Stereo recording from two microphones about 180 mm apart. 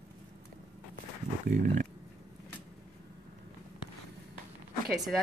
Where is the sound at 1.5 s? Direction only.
45° right (ahead or behind).